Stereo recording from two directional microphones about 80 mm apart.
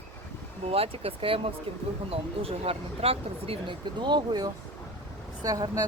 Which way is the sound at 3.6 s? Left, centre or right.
Right.